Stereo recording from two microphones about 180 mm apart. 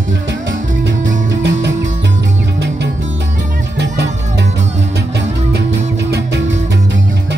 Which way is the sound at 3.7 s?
70° right (ahead or behind).